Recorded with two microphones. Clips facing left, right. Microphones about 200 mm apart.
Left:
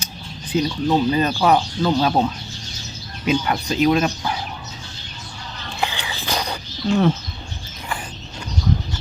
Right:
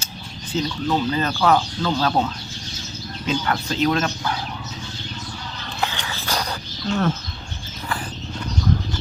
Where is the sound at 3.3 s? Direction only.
15° left (ahead or behind).